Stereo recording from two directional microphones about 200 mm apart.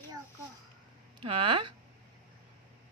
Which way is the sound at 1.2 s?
25° right (ahead or behind).